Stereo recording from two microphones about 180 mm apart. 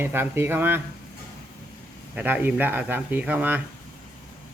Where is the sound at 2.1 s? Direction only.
10° right (ahead or behind).